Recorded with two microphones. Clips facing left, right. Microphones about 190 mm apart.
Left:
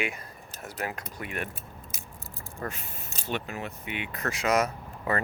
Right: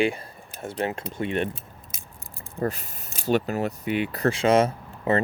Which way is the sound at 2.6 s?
40° right (ahead or behind).